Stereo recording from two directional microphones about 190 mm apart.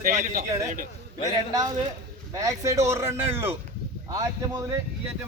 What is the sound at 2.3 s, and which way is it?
Speech, 15° right (ahead or behind).